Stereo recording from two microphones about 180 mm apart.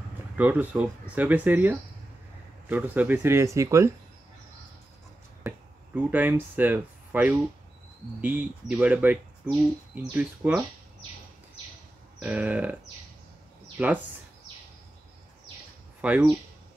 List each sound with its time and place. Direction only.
0.4 s speech: 10° right (ahead or behind)
5.4 s a sound: 15° right (ahead or behind)
5.9 s speech: 10° right (ahead or behind)
12.2 s speech: 10° right (ahead or behind)
13.8 s speech: 10° right (ahead or behind)
16.0 s speech: 10° right (ahead or behind)